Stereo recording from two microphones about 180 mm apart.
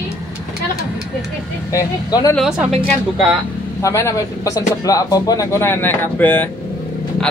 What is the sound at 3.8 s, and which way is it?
Speech, 15° left (ahead or behind).